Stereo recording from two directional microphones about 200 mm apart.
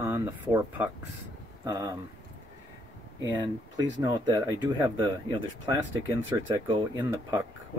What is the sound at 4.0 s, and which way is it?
Speech, 20° right (ahead or behind).